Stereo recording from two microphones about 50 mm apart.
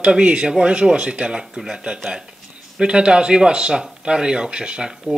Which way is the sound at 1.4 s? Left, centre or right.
Centre.